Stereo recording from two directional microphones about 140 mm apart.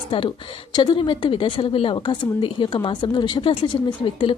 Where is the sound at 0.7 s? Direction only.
30° left (ahead or behind).